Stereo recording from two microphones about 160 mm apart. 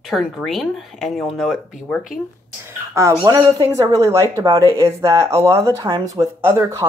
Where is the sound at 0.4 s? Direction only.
Centre (ahead or behind).